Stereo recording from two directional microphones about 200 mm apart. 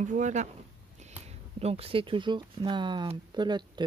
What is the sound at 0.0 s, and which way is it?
Speech, 40° right (ahead or behind).